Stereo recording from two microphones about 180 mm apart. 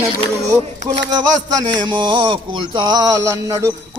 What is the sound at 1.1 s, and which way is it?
Speech, 20° right (ahead or behind).